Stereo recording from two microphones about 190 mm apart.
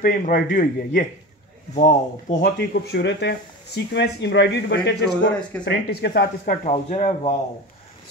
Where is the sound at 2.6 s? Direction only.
65° left (ahead or behind).